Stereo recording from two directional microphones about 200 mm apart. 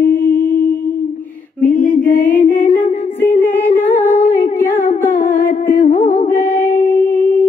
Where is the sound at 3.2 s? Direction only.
10° left (ahead or behind).